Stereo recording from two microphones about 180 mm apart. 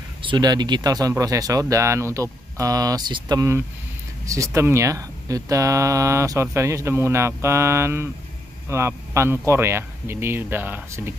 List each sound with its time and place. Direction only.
0.2 s a man's voice: 25° right (ahead or behind)